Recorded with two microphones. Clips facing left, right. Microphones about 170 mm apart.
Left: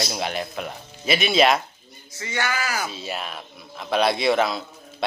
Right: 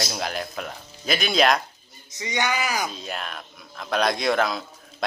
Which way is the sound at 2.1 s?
15° right (ahead or behind).